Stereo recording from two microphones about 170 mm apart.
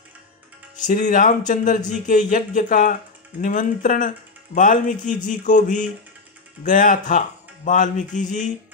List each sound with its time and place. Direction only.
0.8 s speech: 50° left (ahead or behind)